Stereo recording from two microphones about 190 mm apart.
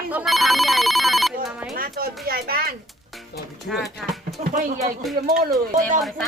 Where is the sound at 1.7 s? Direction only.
50° right (ahead or behind).